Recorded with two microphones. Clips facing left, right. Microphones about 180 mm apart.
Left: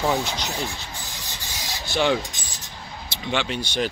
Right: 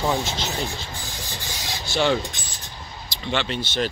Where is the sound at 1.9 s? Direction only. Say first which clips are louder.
Even; 15° left (ahead or behind).